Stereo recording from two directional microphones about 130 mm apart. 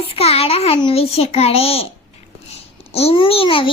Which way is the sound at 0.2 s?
50° left (ahead or behind).